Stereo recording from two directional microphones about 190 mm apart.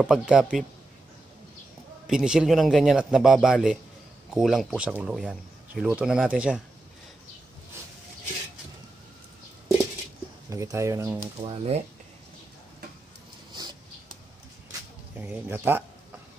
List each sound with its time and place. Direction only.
0.0 s speech: 5° right (ahead or behind)
2.0 s speech: 5° right (ahead or behind)
10.5 s speech: 15° right (ahead or behind)
11.4 s speech: 30° right (ahead or behind)
14.7 s a sound: 10° right (ahead or behind)